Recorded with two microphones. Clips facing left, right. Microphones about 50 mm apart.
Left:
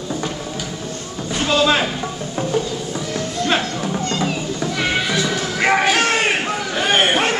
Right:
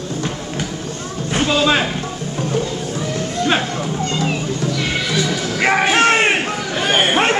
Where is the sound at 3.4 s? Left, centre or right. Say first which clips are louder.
Right 2 dB; centre.